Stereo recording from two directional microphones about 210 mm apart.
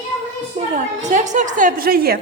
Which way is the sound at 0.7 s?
35° right (ahead or behind).